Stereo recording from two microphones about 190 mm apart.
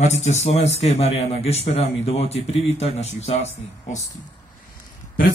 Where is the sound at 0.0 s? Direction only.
35° left (ahead or behind).